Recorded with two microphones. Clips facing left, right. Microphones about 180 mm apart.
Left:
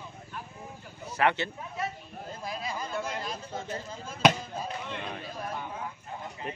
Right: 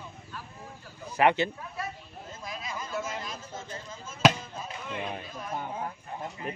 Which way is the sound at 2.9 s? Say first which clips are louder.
Right 2 dB; centre (ahead or behind).